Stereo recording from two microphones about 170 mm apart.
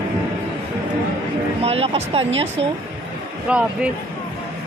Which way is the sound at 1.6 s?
35° right (ahead or behind).